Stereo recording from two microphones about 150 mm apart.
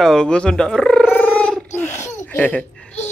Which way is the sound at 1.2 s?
10° left (ahead or behind).